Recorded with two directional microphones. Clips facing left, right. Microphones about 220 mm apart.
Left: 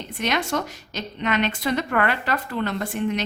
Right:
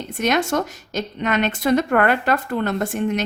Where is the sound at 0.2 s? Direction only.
45° right (ahead or behind).